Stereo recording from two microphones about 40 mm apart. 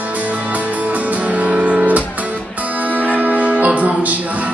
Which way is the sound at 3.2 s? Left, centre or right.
Right.